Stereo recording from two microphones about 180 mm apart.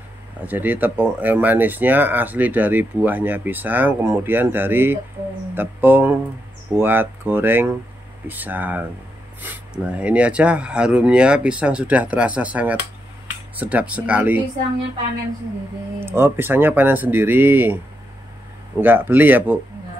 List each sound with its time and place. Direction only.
0.5 s speech: 10° right (ahead or behind)
16.1 s speech: 15° right (ahead or behind)
18.8 s speech: 10° right (ahead or behind)